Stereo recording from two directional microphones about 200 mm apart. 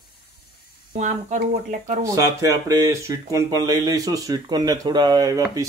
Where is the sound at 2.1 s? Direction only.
15° right (ahead or behind).